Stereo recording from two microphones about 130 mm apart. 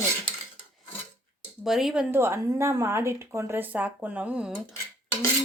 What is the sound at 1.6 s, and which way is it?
Speech, 5° right (ahead or behind).